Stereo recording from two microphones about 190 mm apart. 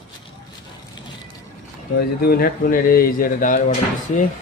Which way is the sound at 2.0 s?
55° left (ahead or behind).